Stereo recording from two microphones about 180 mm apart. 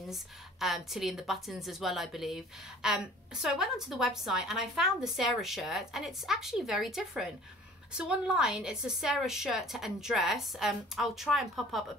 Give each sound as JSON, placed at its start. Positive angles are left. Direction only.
{"t": 0.1, "sound": "a woman's voice", "side_deg": 0}